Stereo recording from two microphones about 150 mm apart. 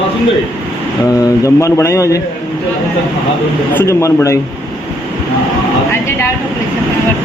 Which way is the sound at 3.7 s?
20° left (ahead or behind).